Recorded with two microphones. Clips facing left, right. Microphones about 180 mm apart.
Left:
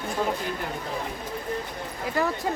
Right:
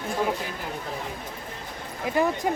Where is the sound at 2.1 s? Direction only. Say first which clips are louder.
Right 3 dB; 20° right (ahead or behind).